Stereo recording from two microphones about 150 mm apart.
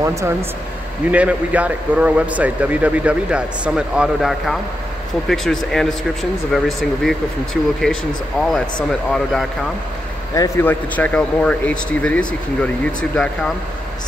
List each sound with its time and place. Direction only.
0.0 s speech: 20° right (ahead or behind)
1.1 s speech: 10° right (ahead or behind)
8.4 s speech: 5° left (ahead or behind)
10.3 s speech: 20° left (ahead or behind)